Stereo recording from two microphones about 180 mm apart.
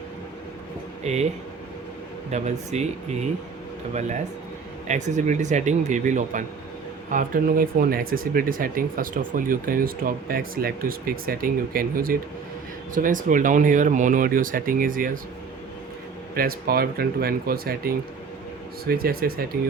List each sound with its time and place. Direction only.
1.0 s a man's voice: 40° right (ahead or behind)
2.3 s a man's voice: 40° right (ahead or behind)
4.9 s a man's voice: 40° right (ahead or behind)
16.3 s speech: 55° right (ahead or behind)